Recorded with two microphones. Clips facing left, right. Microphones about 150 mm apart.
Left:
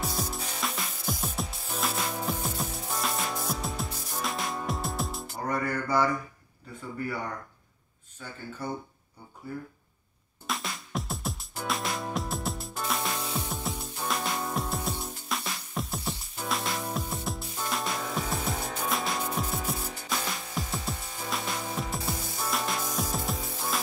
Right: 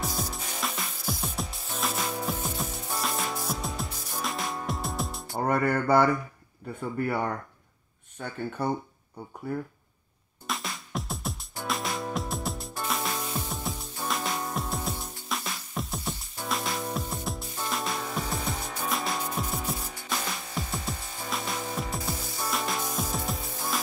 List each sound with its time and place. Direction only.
0.0 s music: centre (ahead or behind)
5.5 s mantra: 60° right (ahead or behind)
6.8 s speech: 60° right (ahead or behind)
10.4 s music: centre (ahead or behind)